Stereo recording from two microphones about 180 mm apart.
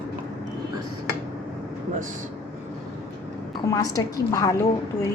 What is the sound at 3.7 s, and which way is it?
Speech, 20° left (ahead or behind).